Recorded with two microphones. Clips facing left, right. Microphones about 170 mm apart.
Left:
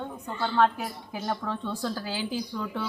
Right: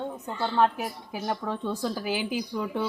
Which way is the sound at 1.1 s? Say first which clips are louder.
Even; 10° right (ahead or behind).